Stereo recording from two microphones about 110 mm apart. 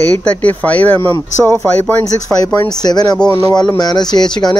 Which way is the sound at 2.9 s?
40° left (ahead or behind).